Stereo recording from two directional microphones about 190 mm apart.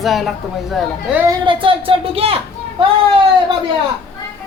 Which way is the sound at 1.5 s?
25° right (ahead or behind).